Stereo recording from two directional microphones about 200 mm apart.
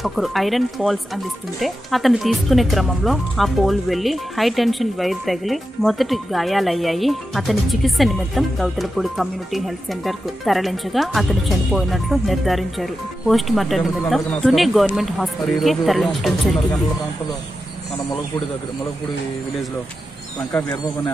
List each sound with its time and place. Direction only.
0.0 s speech: centre (ahead or behind)
20.5 s speech: 15° left (ahead or behind)